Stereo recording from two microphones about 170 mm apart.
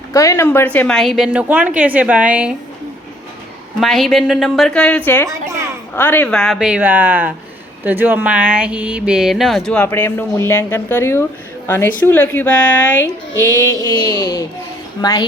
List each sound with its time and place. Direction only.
0.1 s a woman's voice: 20° left (ahead or behind); by 2.6 s 5° right (ahead or behind)
3.8 s a woman's voice: centre (ahead or behind)
5.2 s a sound: 20° right (ahead or behind)
6.0 s a woman's voice: 10° left (ahead or behind)